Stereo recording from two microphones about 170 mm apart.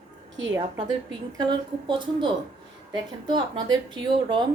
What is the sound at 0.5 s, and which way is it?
Speech, 25° right (ahead or behind).